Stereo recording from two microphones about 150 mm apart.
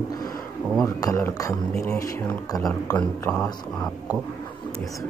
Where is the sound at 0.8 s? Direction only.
20° left (ahead or behind).